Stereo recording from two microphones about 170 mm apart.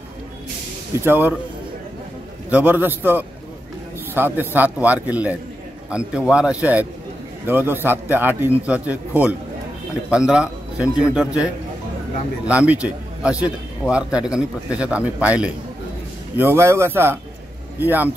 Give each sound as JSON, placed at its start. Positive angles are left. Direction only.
{"t": 1.0, "sound": "a man's voice", "side_deg": -10}
{"t": 2.5, "sound": "a man's voice", "side_deg": -10}